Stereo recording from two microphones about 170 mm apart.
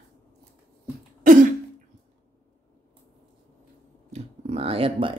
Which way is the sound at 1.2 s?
55° right (ahead or behind).